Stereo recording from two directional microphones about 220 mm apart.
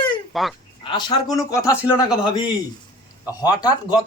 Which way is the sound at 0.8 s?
20° left (ahead or behind).